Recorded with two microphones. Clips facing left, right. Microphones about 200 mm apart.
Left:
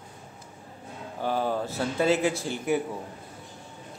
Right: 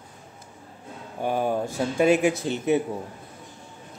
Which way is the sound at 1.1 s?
15° right (ahead or behind).